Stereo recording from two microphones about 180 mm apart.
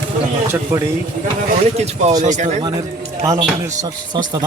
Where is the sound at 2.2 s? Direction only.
40° right (ahead or behind).